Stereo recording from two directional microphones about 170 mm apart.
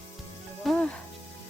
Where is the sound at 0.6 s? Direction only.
5° left (ahead or behind).